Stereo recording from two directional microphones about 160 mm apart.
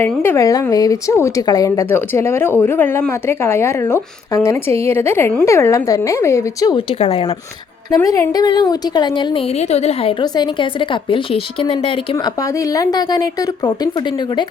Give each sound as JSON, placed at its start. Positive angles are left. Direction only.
{"t": 0.0, "sound": "a woman's voice", "side_deg": 15}
{"t": 6.7, "sound": "speech", "side_deg": 35}
{"t": 7.9, "sound": "a woman's voice", "side_deg": 20}
{"t": 9.6, "sound": "speech", "side_deg": 40}
{"t": 12.1, "sound": "a woman's voice", "side_deg": 20}